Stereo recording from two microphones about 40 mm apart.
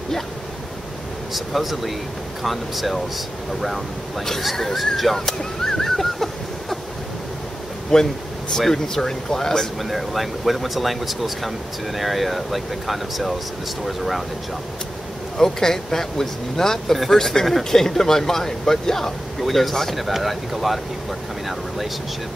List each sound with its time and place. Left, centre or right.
1.3 s speech: centre
4.7 s arrow: centre
7.9 s speech: centre
9.8 s speech: centre
15.3 s speech: centre